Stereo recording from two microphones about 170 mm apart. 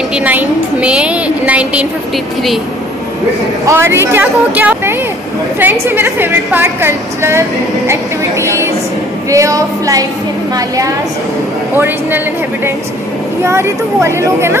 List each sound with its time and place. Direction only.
0.1 s a woman's voice: 10° right (ahead or behind)
3.6 s a woman's voice: 15° right (ahead or behind)
9.3 s music: 20° right (ahead or behind)
11.7 s a woman's voice: 10° right (ahead or behind)
13.4 s a woman's voice: 15° right (ahead or behind)